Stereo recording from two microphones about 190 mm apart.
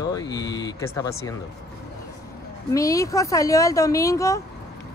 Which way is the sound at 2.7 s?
15° left (ahead or behind).